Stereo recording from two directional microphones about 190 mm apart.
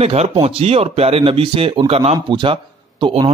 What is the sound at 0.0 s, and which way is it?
A man's voice, 30° right (ahead or behind).